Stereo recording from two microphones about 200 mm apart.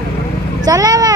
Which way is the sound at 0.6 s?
20° right (ahead or behind).